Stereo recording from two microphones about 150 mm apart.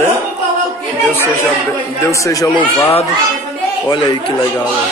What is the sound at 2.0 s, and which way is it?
Speech, 20° left (ahead or behind).